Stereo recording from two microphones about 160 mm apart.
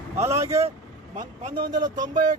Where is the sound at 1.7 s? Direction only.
25° right (ahead or behind).